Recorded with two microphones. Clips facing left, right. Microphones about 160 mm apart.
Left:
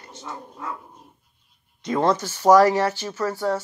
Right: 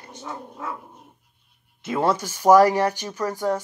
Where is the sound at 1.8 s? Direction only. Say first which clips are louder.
Left 1 dB; 10° right (ahead or behind).